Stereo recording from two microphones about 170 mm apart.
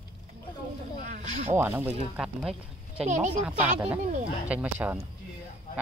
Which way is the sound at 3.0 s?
45° right (ahead or behind).